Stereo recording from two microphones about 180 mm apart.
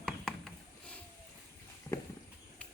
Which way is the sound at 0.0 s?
Centre (ahead or behind).